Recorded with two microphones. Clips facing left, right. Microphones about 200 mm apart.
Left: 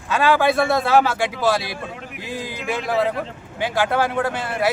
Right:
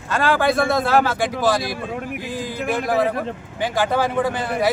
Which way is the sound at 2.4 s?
50° right (ahead or behind).